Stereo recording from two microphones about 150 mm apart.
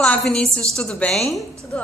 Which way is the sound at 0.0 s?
5° left (ahead or behind).